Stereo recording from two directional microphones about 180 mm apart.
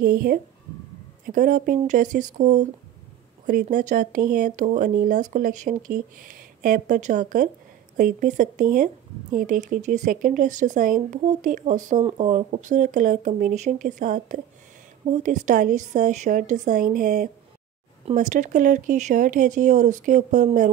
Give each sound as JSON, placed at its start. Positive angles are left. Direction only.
{"t": 0.0, "sound": "speech", "side_deg": -55}
{"t": 3.6, "sound": "speech", "side_deg": -45}